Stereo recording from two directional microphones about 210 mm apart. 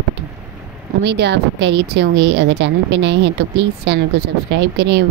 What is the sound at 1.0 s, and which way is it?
A woman's voice, 55° right (ahead or behind).